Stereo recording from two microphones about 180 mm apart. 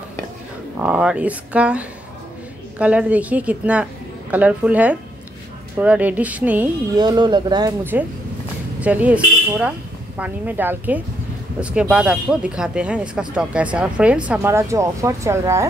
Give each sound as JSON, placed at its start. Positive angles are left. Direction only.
{"t": 0.7, "sound": "speech", "side_deg": -5}
{"t": 7.0, "sound": "speech", "side_deg": -25}
{"t": 7.9, "sound": "speech", "side_deg": -10}